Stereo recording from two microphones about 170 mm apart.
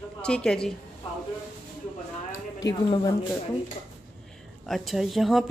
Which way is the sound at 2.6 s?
20° left (ahead or behind).